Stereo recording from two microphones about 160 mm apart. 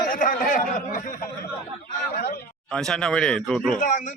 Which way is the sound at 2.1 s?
75° left (ahead or behind).